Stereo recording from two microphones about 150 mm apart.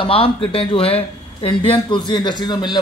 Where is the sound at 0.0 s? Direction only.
35° left (ahead or behind).